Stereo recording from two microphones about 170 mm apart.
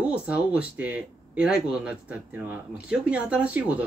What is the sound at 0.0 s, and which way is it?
Speech, 5° right (ahead or behind).